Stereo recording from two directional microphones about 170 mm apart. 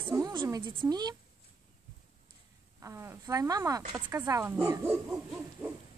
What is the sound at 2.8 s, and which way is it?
Speech, 15° right (ahead or behind).